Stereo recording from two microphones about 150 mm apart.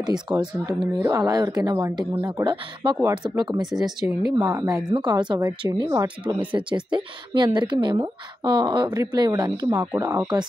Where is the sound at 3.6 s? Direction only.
5° right (ahead or behind).